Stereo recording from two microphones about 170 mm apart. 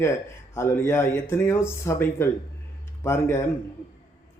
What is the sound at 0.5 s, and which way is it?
A man's voice, 15° left (ahead or behind).